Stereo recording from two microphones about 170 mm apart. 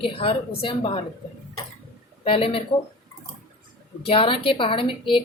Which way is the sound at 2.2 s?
35° left (ahead or behind).